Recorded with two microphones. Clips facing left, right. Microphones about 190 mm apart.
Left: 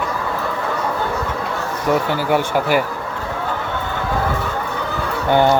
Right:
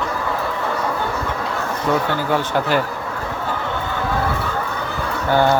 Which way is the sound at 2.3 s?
10° left (ahead or behind).